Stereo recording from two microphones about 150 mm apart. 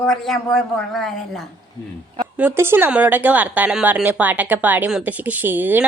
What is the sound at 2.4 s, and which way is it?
Speech, 15° right (ahead or behind).